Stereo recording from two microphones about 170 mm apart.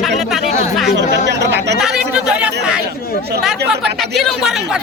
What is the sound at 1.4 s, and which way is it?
Speech, 90° right.